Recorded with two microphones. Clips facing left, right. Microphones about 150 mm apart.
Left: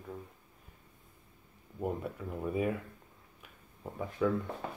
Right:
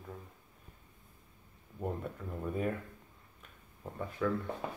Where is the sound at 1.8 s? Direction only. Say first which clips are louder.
Left 2 dB; 5° left (ahead or behind).